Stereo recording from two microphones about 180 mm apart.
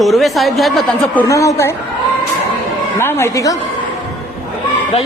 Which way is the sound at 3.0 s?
15° left (ahead or behind).